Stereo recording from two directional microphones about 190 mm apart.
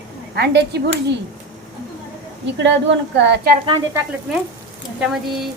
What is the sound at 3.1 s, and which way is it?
Speech, 65° right (ahead or behind).